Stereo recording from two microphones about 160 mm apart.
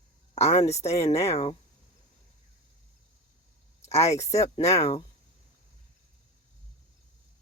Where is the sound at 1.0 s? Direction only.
40° left (ahead or behind).